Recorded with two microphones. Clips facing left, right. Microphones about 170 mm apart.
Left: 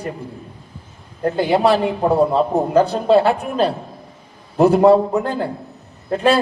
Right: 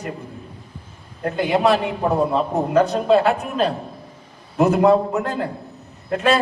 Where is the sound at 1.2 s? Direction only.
35° left (ahead or behind).